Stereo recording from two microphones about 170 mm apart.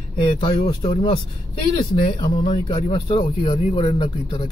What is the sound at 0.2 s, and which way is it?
Speech, 30° left (ahead or behind).